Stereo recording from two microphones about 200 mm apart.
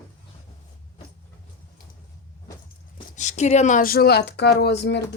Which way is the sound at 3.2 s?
35° left (ahead or behind).